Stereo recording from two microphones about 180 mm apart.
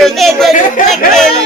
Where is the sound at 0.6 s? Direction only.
45° left (ahead or behind).